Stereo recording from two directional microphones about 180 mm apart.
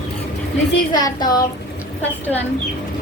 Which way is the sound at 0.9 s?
20° left (ahead or behind).